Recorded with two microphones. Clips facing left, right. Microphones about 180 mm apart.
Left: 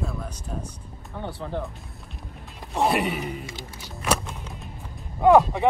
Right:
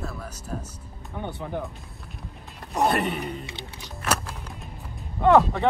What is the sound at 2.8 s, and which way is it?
Speech, centre (ahead or behind).